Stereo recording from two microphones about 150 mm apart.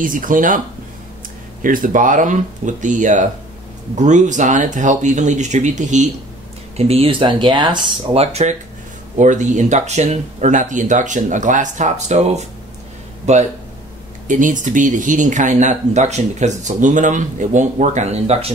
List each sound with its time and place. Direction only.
0.0 s speech: 65° right (ahead or behind)
1.6 s speech: 65° right (ahead or behind)
6.8 s speech: 40° right (ahead or behind)